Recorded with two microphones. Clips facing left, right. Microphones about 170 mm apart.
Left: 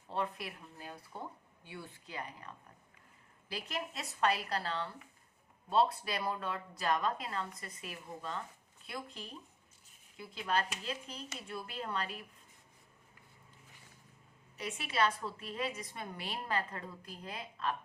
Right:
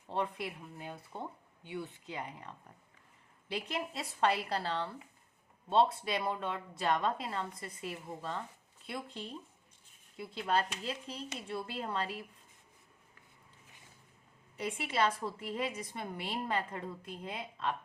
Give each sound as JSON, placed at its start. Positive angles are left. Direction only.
{"t": 0.1, "sound": "a woman's voice", "side_deg": -20}
{"t": 10.4, "sound": "a woman's voice", "side_deg": -30}
{"t": 14.5, "sound": "a woman's voice", "side_deg": -25}